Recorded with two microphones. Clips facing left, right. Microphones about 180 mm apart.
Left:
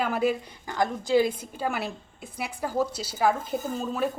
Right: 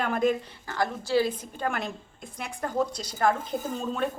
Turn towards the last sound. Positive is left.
turn(degrees=5)  # may be behind; listen again after turning